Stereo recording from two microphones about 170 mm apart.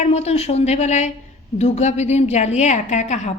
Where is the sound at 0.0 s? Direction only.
40° left (ahead or behind).